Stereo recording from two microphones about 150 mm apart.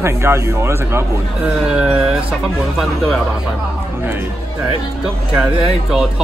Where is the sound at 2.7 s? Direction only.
Centre (ahead or behind).